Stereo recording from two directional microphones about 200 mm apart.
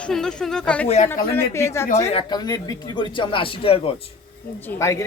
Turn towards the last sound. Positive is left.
turn(degrees=15)  # may be behind; listen again after turning